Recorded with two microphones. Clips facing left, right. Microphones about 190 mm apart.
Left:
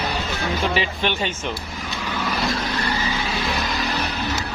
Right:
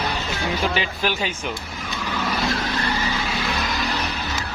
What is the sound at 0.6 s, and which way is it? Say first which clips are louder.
Speech: left 2 dB; centre (ahead or behind).